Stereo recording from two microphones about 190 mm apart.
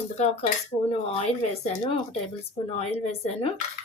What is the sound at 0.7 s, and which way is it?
Speech, 25° left (ahead or behind).